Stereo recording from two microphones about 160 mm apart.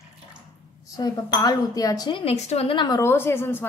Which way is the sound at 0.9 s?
25° left (ahead or behind).